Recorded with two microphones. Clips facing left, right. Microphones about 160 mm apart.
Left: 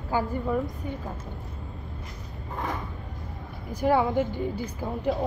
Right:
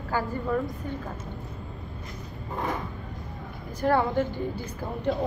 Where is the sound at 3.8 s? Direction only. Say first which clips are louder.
Left 1 dB; 10° left (ahead or behind).